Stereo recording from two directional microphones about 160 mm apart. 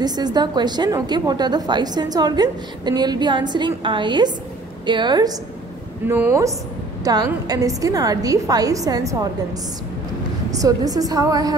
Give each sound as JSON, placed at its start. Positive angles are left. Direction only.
{"t": 0.0, "sound": "a woman's voice", "side_deg": -25}
{"t": 6.0, "sound": "a woman's voice", "side_deg": -15}
{"t": 10.6, "sound": "a woman's voice", "side_deg": -25}